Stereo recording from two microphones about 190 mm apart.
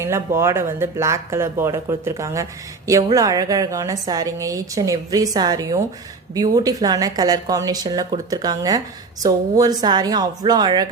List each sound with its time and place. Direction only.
0.0 s a woman's voice: 15° right (ahead or behind)